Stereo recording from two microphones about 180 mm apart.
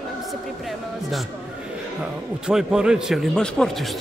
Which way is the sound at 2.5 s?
5° right (ahead or behind).